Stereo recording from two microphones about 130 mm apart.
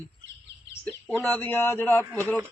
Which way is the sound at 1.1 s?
15° left (ahead or behind).